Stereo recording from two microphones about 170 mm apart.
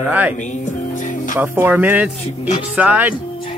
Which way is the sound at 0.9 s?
50° left (ahead or behind).